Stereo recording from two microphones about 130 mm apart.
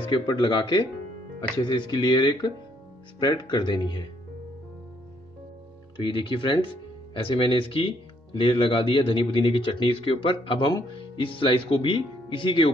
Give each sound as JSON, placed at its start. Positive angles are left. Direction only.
{"t": 0.0, "sound": "speech", "side_deg": 35}
{"t": 5.9, "sound": "speech", "side_deg": 40}